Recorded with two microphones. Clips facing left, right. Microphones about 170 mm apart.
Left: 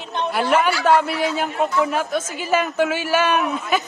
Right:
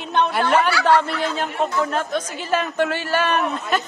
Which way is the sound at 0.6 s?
5° left (ahead or behind).